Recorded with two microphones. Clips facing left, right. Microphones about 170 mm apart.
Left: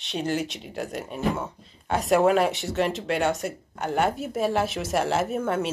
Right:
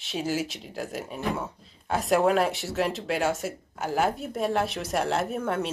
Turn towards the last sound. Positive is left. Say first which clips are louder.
# left 2 dB
turn(degrees=0)  # may be behind; listen again after turning